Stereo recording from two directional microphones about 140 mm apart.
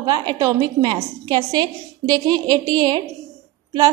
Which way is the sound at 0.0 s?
30° right (ahead or behind).